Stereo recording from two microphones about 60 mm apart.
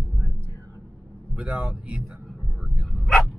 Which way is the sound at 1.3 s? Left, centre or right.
Centre.